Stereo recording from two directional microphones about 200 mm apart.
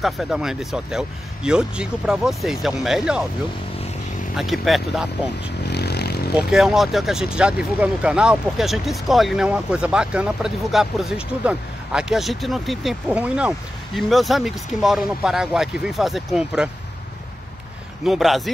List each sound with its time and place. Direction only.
0.0 s speech: centre (ahead or behind)
4.4 s speech: centre (ahead or behind)
5.7 s vehicle: 55° left (ahead or behind)
6.3 s speech: centre (ahead or behind)
18.0 s speech: centre (ahead or behind)